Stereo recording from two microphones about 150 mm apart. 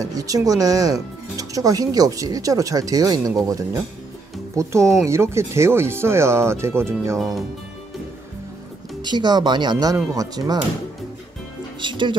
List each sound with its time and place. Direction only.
0.0 s speech: 25° right (ahead or behind)
7.2 s speech: centre (ahead or behind)
9.0 s speech: 30° right (ahead or behind)
11.8 s speech: 30° right (ahead or behind)